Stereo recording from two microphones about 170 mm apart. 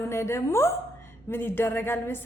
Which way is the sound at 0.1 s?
15° left (ahead or behind).